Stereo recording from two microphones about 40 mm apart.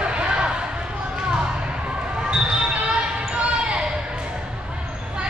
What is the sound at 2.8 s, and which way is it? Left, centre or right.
Basketball bounce, right.